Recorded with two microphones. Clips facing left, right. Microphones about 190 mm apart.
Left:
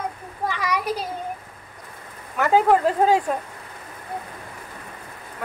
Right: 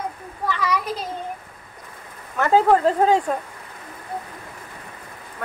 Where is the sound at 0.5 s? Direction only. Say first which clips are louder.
Right 1 dB; 10° left (ahead or behind).